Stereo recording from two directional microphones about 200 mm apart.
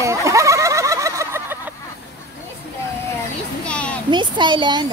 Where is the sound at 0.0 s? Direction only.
15° right (ahead or behind).